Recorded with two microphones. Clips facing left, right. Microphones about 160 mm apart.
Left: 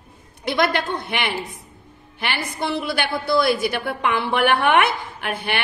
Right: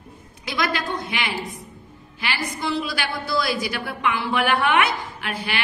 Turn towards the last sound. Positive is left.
turn(degrees=55)  # may be behind; listen again after turning